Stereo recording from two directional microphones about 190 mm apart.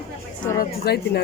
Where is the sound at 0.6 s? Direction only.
55° left (ahead or behind).